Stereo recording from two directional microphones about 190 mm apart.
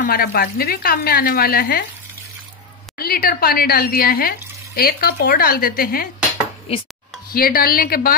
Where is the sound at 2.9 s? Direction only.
50° left (ahead or behind).